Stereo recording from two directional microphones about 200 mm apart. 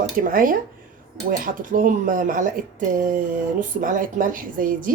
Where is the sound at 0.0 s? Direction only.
45° right (ahead or behind).